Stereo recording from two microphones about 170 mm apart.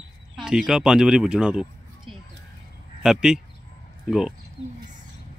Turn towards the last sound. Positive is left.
turn(degrees=-5)  # may be behind; listen again after turning